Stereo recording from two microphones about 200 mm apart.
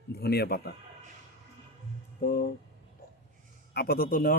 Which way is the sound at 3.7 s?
50° left (ahead or behind).